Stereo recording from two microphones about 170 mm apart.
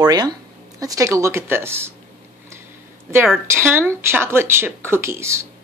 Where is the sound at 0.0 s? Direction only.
25° right (ahead or behind).